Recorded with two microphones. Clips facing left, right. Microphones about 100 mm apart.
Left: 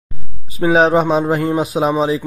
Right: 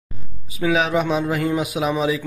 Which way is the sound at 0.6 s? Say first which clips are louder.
Left 7 dB; 40° left (ahead or behind).